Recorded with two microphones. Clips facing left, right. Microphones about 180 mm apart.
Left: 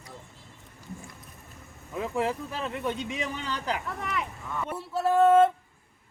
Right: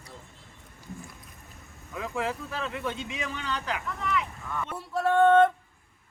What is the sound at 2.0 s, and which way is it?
Speech, 35° left (ahead or behind).